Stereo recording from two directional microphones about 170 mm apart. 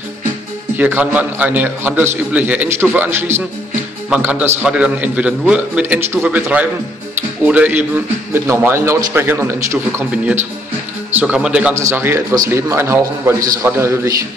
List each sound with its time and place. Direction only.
0.7 s a man's voice: 10° right (ahead or behind)